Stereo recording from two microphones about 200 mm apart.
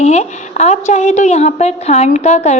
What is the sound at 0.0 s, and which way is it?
A woman's voice, 35° left (ahead or behind).